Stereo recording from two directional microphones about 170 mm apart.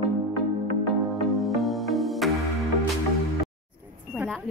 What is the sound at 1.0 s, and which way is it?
Music, centre (ahead or behind).